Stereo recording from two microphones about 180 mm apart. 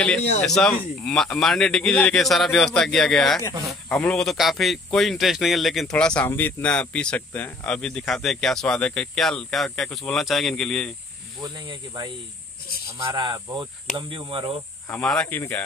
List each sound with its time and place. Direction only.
0.4 s speech: 5° left (ahead or behind)
11.4 s speech: 25° right (ahead or behind)
14.9 s speech: 5° left (ahead or behind)